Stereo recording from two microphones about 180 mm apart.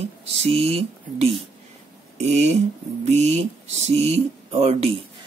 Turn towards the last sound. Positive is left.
turn(degrees=-35)  # may be behind; listen again after turning